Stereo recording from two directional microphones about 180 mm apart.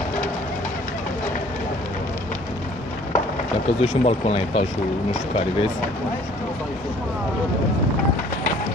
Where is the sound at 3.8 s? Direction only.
35° left (ahead or behind).